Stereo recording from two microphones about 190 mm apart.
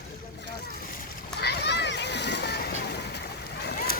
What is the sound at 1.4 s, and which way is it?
Splash, 55° left (ahead or behind).